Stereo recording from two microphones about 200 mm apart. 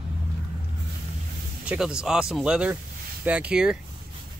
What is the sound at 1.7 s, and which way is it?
Speech, 5° right (ahead or behind).